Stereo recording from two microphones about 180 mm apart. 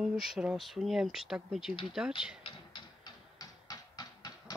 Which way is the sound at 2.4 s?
25° left (ahead or behind).